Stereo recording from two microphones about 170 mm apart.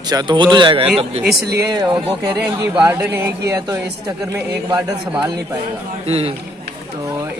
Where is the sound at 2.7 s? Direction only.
15° right (ahead or behind).